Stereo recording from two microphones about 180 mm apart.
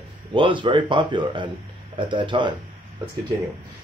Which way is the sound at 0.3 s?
25° right (ahead or behind).